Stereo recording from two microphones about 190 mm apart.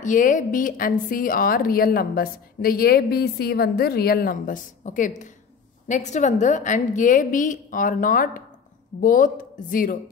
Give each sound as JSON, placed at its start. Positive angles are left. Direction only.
{"t": 0.0, "sound": "a woman's voice", "side_deg": 45}